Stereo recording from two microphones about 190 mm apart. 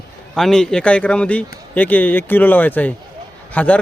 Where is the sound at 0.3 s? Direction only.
Centre (ahead or behind).